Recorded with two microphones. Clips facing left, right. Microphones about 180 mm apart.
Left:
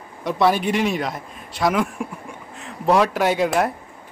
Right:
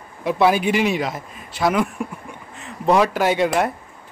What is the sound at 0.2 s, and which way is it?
Speech, 5° right (ahead or behind).